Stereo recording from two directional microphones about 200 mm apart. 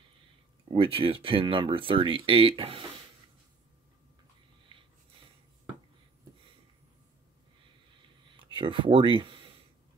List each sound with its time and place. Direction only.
0.7 s speech: 25° right (ahead or behind)
4.7 s wheeze: 25° right (ahead or behind)
8.4 s speech: 25° right (ahead or behind)